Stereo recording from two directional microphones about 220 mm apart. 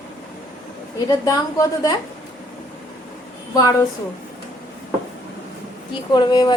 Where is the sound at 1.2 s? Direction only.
15° left (ahead or behind).